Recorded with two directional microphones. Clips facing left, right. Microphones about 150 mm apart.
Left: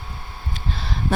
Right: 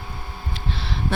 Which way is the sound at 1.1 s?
40° left (ahead or behind).